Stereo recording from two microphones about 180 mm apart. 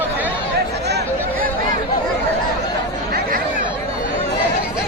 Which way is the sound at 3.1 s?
50° right (ahead or behind).